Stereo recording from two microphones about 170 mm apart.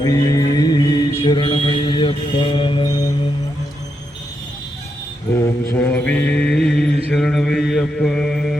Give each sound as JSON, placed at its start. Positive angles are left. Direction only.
{"t": 0.0, "sound": "music", "side_deg": 20}
{"t": 1.2, "sound": "mantra", "side_deg": 30}
{"t": 5.7, "sound": "mantra", "side_deg": 10}